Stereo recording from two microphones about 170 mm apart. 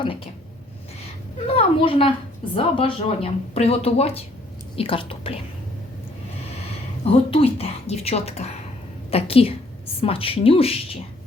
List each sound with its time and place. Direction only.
1.5 s a woman's voice: 35° left (ahead or behind)
7.0 s a woman's voice: 35° left (ahead or behind)